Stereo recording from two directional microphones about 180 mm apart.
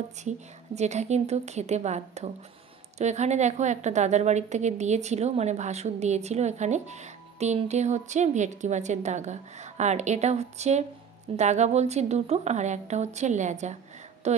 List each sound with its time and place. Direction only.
0.2 s a woman's voice: 40° right (ahead or behind)